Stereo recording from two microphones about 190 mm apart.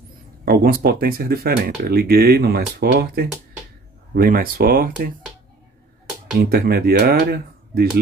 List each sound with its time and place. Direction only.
0.5 s speech: 55° right (ahead or behind)
6.4 s speech: 55° right (ahead or behind)